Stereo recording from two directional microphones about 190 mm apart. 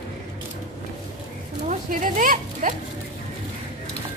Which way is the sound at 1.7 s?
45° right (ahead or behind).